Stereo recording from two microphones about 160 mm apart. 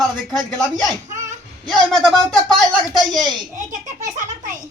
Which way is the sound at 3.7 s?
50° right (ahead or behind).